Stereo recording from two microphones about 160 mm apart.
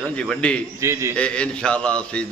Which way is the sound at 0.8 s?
20° right (ahead or behind).